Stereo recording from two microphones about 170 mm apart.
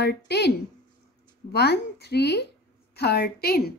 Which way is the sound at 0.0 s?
75° left (ahead or behind).